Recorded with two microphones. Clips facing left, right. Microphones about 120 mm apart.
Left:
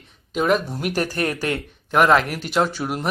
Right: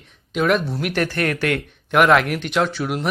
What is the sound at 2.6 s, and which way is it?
Speech, 10° left (ahead or behind).